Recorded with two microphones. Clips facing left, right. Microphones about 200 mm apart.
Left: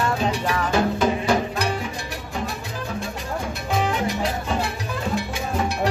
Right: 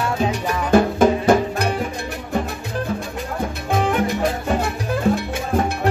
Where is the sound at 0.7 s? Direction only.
50° right (ahead or behind).